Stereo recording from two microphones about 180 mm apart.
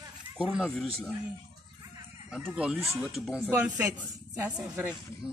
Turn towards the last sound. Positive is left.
turn(degrees=-5)  # may be behind; listen again after turning